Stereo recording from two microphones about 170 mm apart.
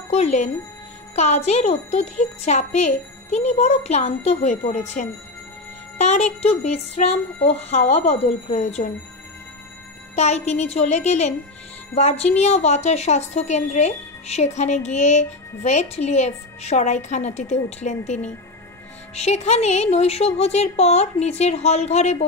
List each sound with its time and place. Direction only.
0.1 s speech: 40° left (ahead or behind)
10.1 s speech: 40° left (ahead or behind)